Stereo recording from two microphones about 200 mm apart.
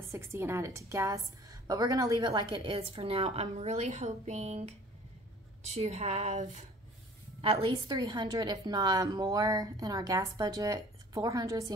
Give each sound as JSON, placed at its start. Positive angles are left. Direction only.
{"t": 0.1, "sound": "a woman's voice", "side_deg": -10}
{"t": 7.9, "sound": "a woman's voice", "side_deg": -20}